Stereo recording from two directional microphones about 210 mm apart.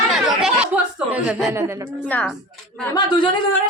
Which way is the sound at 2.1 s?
5° left (ahead or behind).